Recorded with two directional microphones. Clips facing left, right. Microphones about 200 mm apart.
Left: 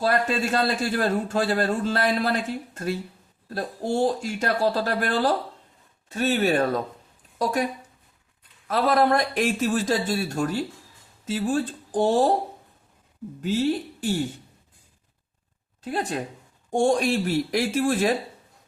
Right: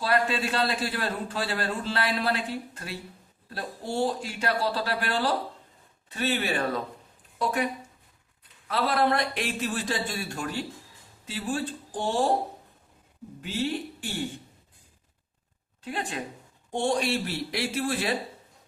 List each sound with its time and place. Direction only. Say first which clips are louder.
0.0 s a man's voice: left 3 dB; 45° left (ahead or behind)
13.4 s speech: left 6 dB; 40° left (ahead or behind)
15.8 s a man's voice: left 5 dB; 40° left (ahead or behind)